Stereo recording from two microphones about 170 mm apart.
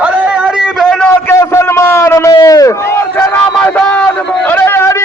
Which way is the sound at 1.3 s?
15° left (ahead or behind).